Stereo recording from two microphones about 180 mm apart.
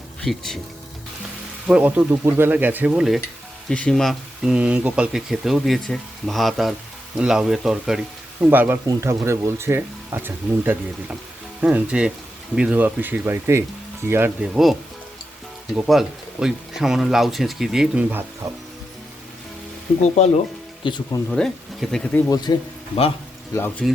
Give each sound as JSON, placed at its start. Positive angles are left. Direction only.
{"t": 0.3, "sound": "speech", "side_deg": 0}
{"t": 1.6, "sound": "speech", "side_deg": -10}
{"t": 20.1, "sound": "speech", "side_deg": 40}
{"t": 20.8, "sound": "speech", "side_deg": 25}
{"t": 21.2, "sound": "speech", "side_deg": 5}
{"t": 22.5, "sound": "speech", "side_deg": 20}
{"t": 23.8, "sound": "speech", "side_deg": 0}